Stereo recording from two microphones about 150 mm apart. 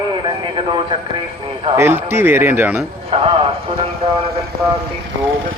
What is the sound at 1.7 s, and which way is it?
A man's voice, 15° right (ahead or behind).